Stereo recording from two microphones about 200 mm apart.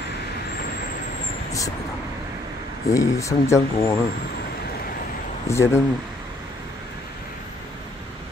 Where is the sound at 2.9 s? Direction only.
15° left (ahead or behind).